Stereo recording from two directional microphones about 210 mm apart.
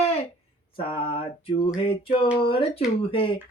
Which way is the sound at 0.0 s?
30° left (ahead or behind).